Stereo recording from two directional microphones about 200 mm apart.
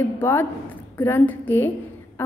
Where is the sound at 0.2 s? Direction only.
10° left (ahead or behind).